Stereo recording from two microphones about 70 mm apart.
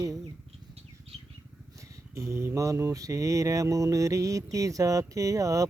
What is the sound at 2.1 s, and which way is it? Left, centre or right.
Speech, right.